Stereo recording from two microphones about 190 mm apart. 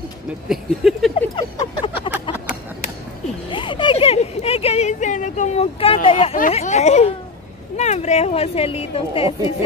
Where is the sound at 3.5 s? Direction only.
25° left (ahead or behind).